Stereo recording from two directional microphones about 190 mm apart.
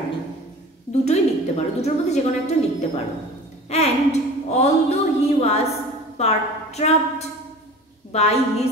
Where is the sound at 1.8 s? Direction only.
35° left (ahead or behind).